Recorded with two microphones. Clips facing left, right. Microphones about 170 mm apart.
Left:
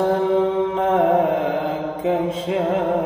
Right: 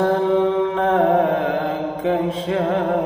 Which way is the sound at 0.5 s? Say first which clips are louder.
Right 1 dB; 20° left (ahead or behind).